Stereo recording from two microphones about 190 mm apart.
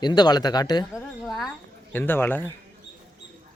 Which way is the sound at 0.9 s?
Centre (ahead or behind).